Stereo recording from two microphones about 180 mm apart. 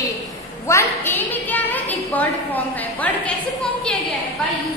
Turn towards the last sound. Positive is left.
turn(degrees=5)  # may be behind; listen again after turning